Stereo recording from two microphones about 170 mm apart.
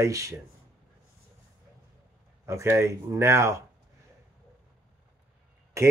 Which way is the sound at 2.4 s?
15° right (ahead or behind).